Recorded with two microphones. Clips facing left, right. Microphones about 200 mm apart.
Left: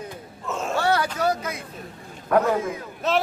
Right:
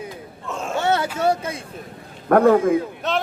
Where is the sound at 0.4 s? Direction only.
Centre (ahead or behind).